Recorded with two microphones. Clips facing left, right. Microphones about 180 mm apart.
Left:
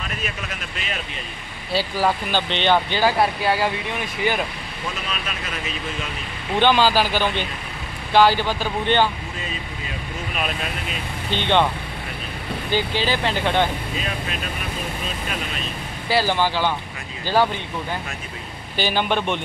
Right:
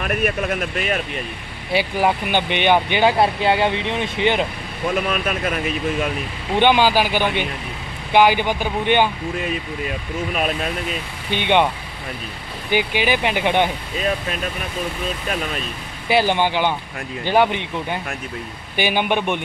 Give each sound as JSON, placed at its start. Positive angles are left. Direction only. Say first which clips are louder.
{"t": 0.0, "sound": "speech", "louder": "right 10 dB", "side_deg": -60}
{"t": 1.7, "sound": "speech", "louder": "right 2 dB", "side_deg": -15}
{"t": 4.9, "sound": "speech", "louder": "right 9 dB", "side_deg": -55}
{"t": 6.6, "sound": "speech", "louder": "right 2 dB", "side_deg": -15}
{"t": 11.2, "sound": "speech", "louder": "right 2 dB", "side_deg": -15}
{"t": 12.7, "sound": "speech", "louder": "right 3 dB", "side_deg": -15}
{"t": 16.1, "sound": "speech", "louder": "right 3 dB", "side_deg": -20}
{"t": 18.8, "sound": "speech", "louder": "right 2 dB", "side_deg": -15}